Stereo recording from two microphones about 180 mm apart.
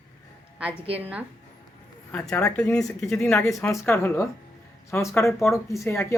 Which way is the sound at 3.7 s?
15° left (ahead or behind).